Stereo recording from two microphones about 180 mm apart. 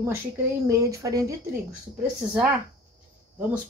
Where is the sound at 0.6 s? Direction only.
20° right (ahead or behind).